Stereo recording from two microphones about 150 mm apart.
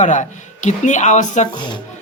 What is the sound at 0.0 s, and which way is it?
Speech, 55° left (ahead or behind).